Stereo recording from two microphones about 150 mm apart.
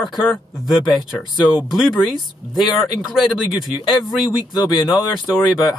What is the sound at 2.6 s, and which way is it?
Speech, 30° left (ahead or behind).